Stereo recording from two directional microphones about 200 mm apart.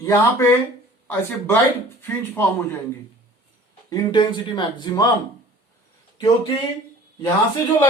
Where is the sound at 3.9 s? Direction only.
25° left (ahead or behind).